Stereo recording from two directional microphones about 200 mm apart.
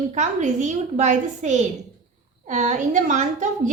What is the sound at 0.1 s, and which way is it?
A woman's voice, 35° right (ahead or behind).